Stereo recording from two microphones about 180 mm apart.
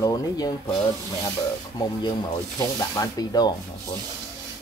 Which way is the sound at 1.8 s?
20° left (ahead or behind).